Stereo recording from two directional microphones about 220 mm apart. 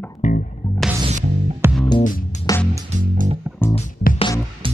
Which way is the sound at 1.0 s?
35° right (ahead or behind).